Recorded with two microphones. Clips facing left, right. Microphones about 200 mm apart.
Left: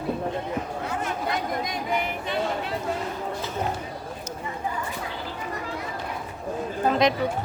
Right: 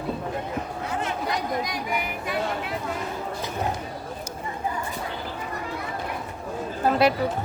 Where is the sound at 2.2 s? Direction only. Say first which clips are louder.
Left 1 dB; 25° left (ahead or behind).